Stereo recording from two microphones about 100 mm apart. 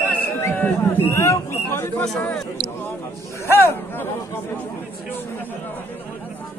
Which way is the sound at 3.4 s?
20° left (ahead or behind).